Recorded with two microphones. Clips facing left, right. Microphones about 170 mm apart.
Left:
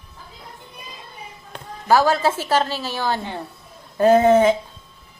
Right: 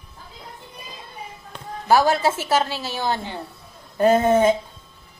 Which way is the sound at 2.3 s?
10° right (ahead or behind).